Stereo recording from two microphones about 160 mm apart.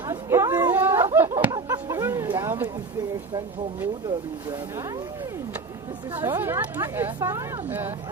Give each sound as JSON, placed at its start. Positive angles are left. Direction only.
{"t": 0.1, "sound": "a sound", "side_deg": -15}
{"t": 2.4, "sound": "speech", "side_deg": -15}
{"t": 6.1, "sound": "speech", "side_deg": -15}